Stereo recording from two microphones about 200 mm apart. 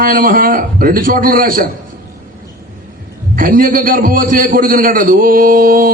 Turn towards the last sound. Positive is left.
turn(degrees=-45)  # may be behind; listen again after turning